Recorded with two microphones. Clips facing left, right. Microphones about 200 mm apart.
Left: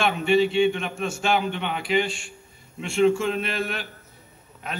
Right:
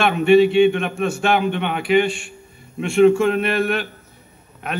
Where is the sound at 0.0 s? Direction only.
60° right (ahead or behind).